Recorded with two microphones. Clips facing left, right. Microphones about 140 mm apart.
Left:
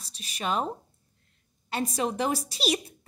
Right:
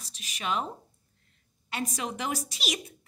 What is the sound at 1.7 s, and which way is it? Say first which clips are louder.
A woman's voice: left 5 dB; 35° left (ahead or behind).